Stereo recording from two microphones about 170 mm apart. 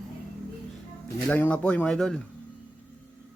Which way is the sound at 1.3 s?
10° left (ahead or behind).